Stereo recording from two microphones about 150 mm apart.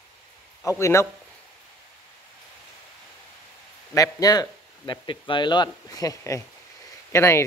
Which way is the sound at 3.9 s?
25° left (ahead or behind).